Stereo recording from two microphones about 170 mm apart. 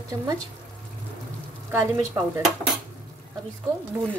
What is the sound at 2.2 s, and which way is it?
Speech, 20° right (ahead or behind).